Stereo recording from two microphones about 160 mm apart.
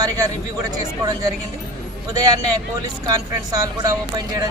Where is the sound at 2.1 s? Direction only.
25° right (ahead or behind).